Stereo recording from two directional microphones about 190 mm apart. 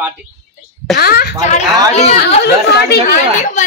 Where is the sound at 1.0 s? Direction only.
55° left (ahead or behind).